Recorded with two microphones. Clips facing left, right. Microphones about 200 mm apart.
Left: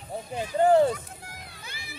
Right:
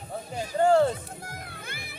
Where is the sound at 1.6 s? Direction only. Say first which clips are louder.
Right 2 dB; 55° right (ahead or behind).